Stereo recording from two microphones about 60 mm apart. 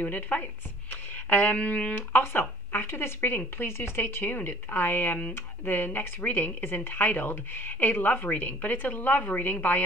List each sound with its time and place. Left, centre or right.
0.0 s speech: left
1.3 s a sound: left
2.1 s speech: left